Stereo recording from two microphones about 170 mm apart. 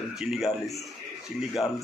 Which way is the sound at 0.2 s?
Centre (ahead or behind).